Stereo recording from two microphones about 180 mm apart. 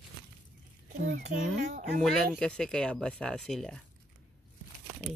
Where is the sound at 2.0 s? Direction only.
5° left (ahead or behind).